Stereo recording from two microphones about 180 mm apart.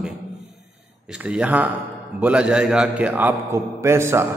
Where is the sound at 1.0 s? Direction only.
5° right (ahead or behind).